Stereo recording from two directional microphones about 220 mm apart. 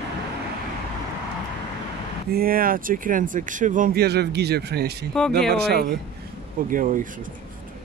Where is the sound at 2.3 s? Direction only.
40° right (ahead or behind).